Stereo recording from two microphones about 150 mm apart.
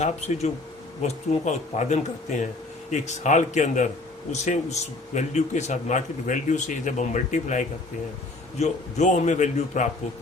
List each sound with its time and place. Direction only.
1.0 s speech: 50° left (ahead or behind)